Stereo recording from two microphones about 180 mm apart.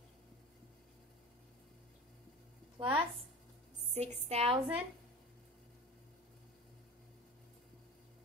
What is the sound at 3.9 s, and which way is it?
Speech, 35° right (ahead or behind).